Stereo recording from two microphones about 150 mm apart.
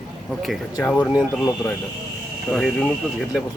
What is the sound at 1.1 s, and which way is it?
A man's voice, centre (ahead or behind).